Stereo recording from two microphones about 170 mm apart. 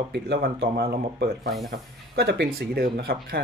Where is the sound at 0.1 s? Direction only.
65° right (ahead or behind).